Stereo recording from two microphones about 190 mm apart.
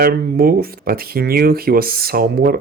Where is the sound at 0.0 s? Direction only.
50° right (ahead or behind).